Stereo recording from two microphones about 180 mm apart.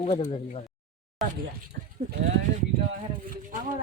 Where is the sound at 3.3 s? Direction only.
45° right (ahead or behind).